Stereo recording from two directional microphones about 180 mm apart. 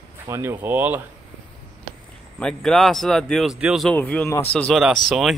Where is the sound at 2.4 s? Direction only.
5° left (ahead or behind).